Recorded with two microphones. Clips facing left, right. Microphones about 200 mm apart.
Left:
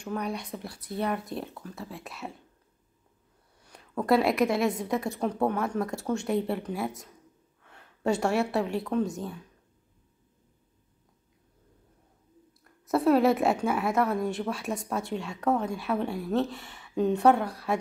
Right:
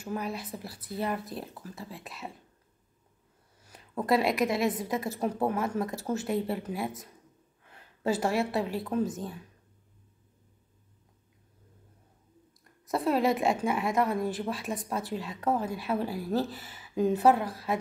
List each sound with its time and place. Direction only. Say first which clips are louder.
0.0 s speech: left 2 dB; 5° right (ahead or behind)
4.0 s a woman's voice: left 3 dB; centre (ahead or behind)
12.8 s speech: left 4 dB; centre (ahead or behind)